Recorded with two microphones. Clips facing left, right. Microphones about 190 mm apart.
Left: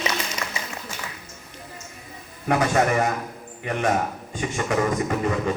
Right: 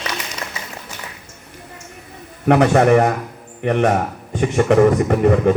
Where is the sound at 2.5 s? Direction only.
65° right (ahead or behind).